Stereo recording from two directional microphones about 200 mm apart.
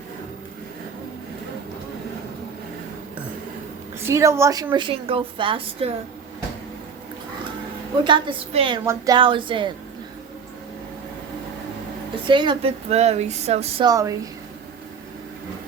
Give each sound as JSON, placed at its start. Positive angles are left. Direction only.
{"t": 4.0, "sound": "a woman's voice", "side_deg": -15}
{"t": 8.0, "sound": "a woman's voice", "side_deg": -25}
{"t": 8.8, "sound": "a sound", "side_deg": -15}
{"t": 9.1, "sound": "a woman's voice", "side_deg": -25}
{"t": 12.3, "sound": "speech", "side_deg": -25}
{"t": 13.8, "sound": "a sound", "side_deg": -15}